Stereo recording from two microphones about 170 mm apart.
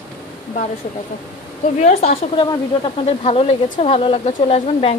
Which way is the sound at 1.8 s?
40° left (ahead or behind).